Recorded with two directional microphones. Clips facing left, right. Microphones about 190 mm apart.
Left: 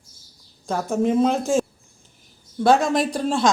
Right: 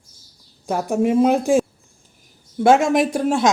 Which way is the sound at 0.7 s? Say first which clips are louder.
Right 2 dB; 15° right (ahead or behind).